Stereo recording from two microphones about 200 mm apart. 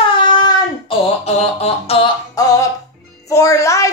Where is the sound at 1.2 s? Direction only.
30° left (ahead or behind).